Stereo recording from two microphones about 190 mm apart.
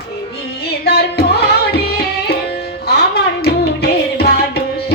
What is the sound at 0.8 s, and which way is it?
Music, 60° left (ahead or behind).